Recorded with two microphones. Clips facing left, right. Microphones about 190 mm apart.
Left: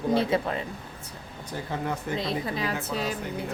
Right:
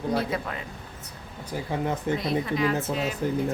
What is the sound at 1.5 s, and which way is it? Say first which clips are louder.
Speech: right 3 dB; 15° right (ahead or behind).